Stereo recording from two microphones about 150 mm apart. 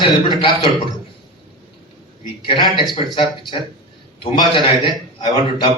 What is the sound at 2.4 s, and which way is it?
A man's voice, 35° left (ahead or behind).